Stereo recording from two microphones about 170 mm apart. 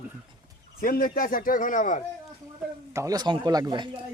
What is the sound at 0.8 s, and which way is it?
Speech, 55° left (ahead or behind).